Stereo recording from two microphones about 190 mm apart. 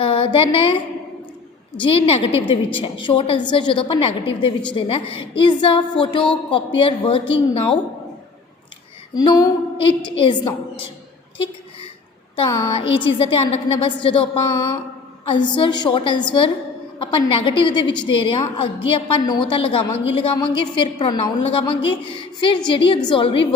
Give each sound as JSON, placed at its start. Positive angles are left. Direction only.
{"t": 0.0, "sound": "a sound", "side_deg": 25}
{"t": 1.8, "sound": "a woman's voice", "side_deg": 30}
{"t": 9.1, "sound": "a woman's voice", "side_deg": 20}
{"t": 12.8, "sound": "a woman's voice", "side_deg": 25}